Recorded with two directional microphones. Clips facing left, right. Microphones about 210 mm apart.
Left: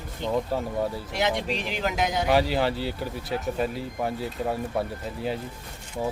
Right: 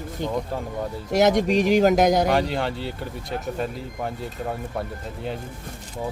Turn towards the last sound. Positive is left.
turn(degrees=5)  # may be behind; listen again after turning